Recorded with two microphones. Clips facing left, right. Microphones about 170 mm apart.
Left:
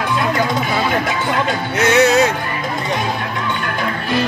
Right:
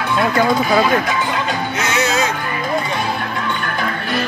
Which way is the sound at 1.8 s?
65° left (ahead or behind).